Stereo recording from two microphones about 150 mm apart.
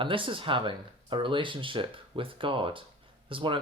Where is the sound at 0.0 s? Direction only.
35° right (ahead or behind).